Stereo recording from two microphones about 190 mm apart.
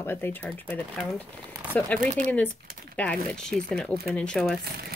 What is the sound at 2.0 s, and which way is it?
Speech, 45° right (ahead or behind).